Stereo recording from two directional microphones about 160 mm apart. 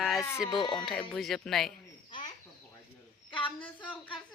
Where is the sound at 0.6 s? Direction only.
30° left (ahead or behind).